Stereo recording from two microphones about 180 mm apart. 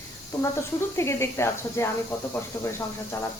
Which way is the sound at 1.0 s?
15° left (ahead or behind).